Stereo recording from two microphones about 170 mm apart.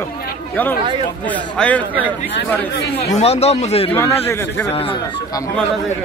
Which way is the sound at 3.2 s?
40° left (ahead or behind).